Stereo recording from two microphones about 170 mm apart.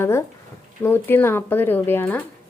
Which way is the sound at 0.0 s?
15° left (ahead or behind).